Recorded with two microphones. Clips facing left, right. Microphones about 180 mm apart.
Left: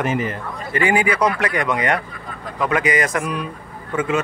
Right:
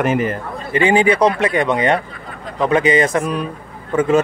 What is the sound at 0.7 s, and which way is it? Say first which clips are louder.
Speech: right 5 dB; 25° right (ahead or behind).